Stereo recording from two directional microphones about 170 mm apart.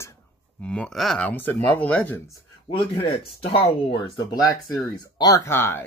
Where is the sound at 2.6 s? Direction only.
30° left (ahead or behind).